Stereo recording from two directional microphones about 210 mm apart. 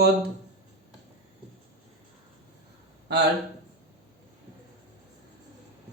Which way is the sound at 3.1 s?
50° right (ahead or behind).